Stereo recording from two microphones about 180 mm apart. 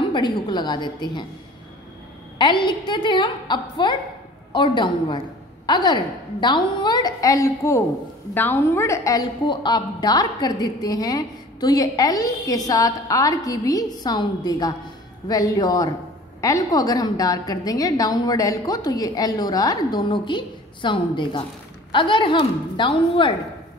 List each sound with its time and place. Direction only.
0.0 s a woman's voice: 25° left (ahead or behind)
2.3 s a woman's voice: 25° left (ahead or behind)